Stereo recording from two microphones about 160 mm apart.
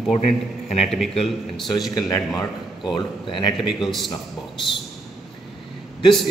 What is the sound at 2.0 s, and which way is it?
Speech, 20° left (ahead or behind).